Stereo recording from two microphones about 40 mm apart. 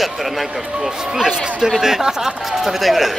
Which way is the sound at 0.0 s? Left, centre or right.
Centre.